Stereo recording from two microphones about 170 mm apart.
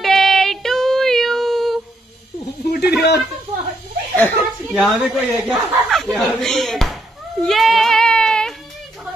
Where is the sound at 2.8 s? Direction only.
75° left (ahead or behind).